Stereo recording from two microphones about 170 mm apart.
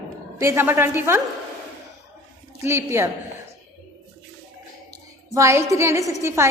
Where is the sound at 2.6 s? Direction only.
15° right (ahead or behind).